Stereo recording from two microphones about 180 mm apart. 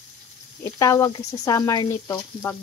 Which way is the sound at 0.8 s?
15° left (ahead or behind).